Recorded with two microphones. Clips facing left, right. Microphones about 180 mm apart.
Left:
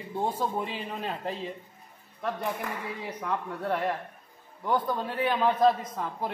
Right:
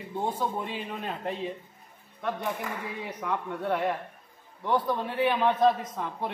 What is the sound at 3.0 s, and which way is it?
A man's voice, centre (ahead or behind).